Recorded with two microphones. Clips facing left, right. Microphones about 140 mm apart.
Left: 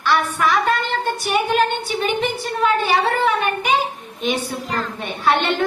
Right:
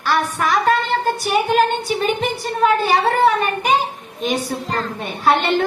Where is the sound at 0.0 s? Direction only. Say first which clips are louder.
Even; 40° right (ahead or behind).